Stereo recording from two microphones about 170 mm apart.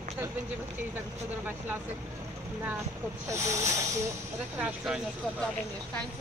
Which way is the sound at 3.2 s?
15° right (ahead or behind).